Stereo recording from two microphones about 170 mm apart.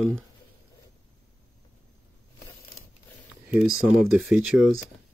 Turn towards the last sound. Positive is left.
turn(degrees=-5)  # may be behind; listen again after turning